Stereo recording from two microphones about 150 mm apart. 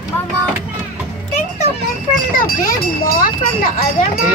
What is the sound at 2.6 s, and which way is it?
Speech, 70° left (ahead or behind).